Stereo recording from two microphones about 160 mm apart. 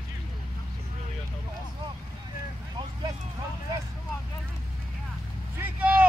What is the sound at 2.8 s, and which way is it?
Speech, 20° right (ahead or behind).